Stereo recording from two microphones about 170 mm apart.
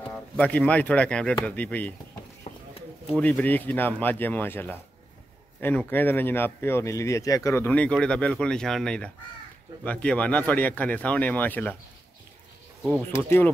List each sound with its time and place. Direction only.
0.1 s speech: 10° left (ahead or behind)
2.5 s a sound: 35° left (ahead or behind)
3.2 s speech: 10° left (ahead or behind)